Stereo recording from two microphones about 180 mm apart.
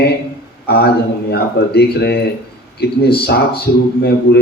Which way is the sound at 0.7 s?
60° left (ahead or behind).